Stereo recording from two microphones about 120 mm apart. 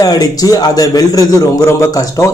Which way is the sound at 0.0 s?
30° left (ahead or behind).